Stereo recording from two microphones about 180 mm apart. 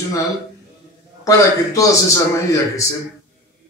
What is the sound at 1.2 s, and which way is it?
A man's voice, 20° left (ahead or behind).